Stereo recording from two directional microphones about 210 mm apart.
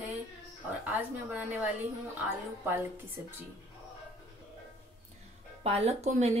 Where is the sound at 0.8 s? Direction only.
10° right (ahead or behind).